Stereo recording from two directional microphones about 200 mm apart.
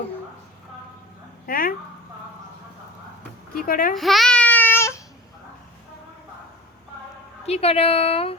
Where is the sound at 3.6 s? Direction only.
45° left (ahead or behind).